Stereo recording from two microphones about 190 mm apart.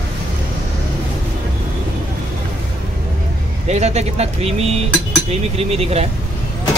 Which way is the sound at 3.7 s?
35° right (ahead or behind).